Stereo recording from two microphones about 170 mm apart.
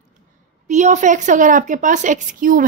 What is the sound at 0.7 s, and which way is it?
A woman's voice, 45° right (ahead or behind).